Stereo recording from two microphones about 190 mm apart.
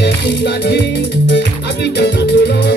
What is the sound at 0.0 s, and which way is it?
Music, 65° left (ahead or behind).